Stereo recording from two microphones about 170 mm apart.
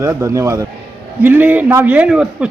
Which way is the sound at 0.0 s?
15° right (ahead or behind).